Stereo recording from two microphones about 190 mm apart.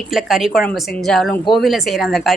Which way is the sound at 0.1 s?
Centre (ahead or behind).